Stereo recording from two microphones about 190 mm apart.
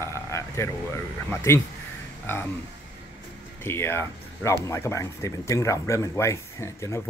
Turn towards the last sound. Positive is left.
turn(degrees=15)  # may be behind; listen again after turning